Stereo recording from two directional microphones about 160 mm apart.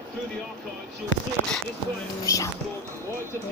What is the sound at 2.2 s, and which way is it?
Speech, 20° left (ahead or behind).